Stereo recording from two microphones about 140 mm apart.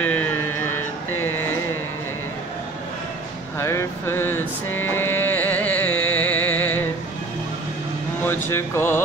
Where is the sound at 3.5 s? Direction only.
20° left (ahead or behind).